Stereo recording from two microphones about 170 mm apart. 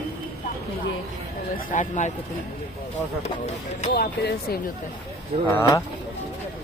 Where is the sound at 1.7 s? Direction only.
45° left (ahead or behind).